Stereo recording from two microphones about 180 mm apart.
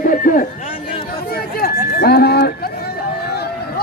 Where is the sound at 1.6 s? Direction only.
60° left (ahead or behind).